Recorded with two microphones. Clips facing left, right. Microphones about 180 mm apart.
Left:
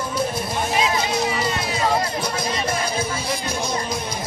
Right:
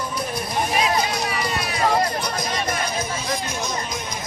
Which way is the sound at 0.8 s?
25° left (ahead or behind).